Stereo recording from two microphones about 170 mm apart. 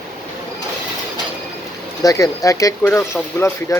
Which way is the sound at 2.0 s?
20° left (ahead or behind).